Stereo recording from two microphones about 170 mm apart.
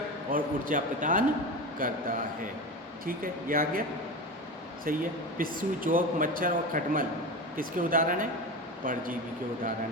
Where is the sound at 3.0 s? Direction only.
55° right (ahead or behind).